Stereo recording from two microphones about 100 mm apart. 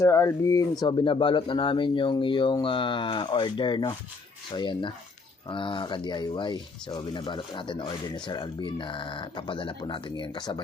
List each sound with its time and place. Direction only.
0.0 s speech: 30° left (ahead or behind)
0.9 s speech: 50° left (ahead or behind)